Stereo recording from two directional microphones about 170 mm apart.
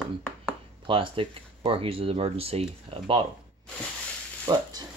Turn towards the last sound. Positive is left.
turn(degrees=-20)  # may be behind; listen again after turning